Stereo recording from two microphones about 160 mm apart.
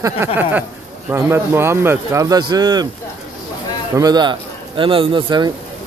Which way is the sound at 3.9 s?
25° right (ahead or behind).